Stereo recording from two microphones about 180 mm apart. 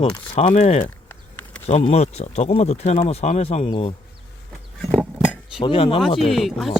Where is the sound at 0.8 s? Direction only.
10° left (ahead or behind).